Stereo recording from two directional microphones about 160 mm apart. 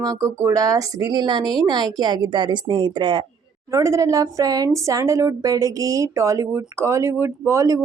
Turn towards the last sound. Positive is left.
turn(degrees=-20)  # may be behind; listen again after turning